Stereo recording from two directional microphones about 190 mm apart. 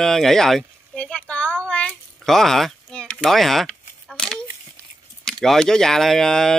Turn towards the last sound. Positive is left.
turn(degrees=5)  # may be behind; listen again after turning